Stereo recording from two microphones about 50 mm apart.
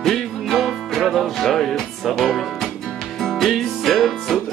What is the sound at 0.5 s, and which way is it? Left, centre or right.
Music, centre.